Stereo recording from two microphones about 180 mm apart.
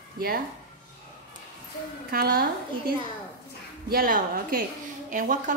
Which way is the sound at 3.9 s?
55° right (ahead or behind).